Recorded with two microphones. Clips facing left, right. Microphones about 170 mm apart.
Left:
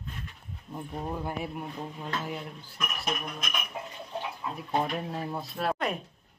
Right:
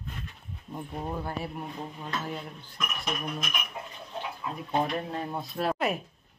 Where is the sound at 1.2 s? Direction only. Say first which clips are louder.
Even; 15° left (ahead or behind).